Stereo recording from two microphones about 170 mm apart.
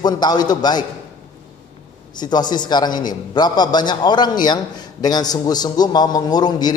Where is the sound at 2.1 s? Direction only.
25° left (ahead or behind).